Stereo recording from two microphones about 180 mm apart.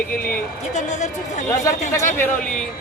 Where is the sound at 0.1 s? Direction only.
50° left (ahead or behind).